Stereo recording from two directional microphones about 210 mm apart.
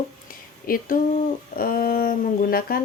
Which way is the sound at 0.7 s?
40° left (ahead or behind).